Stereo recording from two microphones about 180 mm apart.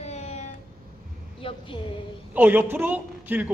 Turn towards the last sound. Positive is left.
turn(degrees=-10)  # may be behind; listen again after turning